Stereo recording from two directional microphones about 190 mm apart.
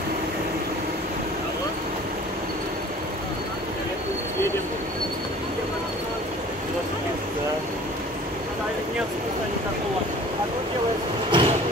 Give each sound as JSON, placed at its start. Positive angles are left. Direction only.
{"t": 11.2, "sound": "train", "side_deg": -25}